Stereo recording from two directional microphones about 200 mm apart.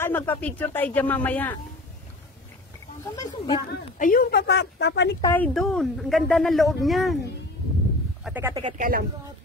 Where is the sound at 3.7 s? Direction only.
45° left (ahead or behind).